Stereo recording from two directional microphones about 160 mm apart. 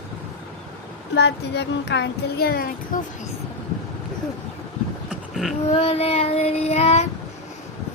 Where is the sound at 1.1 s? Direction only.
90° left; by 2.7 s 75° left (ahead or behind).